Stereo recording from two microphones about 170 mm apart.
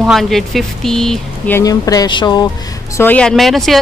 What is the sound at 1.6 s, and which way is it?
Speech, 20° left (ahead or behind).